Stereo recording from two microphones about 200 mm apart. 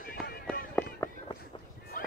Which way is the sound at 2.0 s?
45° left (ahead or behind).